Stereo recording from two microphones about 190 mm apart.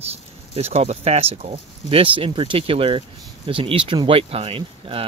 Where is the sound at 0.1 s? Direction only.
35° right (ahead or behind).